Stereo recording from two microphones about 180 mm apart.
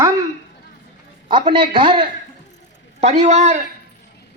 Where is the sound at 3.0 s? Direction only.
40° right (ahead or behind).